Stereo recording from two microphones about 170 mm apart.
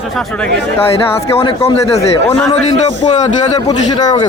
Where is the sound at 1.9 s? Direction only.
20° left (ahead or behind).